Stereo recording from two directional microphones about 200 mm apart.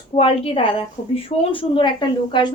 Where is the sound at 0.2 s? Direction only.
30° left (ahead or behind).